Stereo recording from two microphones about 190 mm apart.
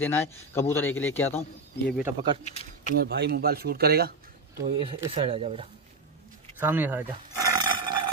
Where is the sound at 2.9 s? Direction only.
55° right (ahead or behind).